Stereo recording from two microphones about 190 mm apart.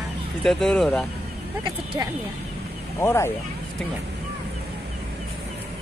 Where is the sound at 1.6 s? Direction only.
25° right (ahead or behind).